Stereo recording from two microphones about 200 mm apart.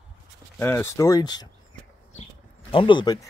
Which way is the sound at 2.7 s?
25° left (ahead or behind).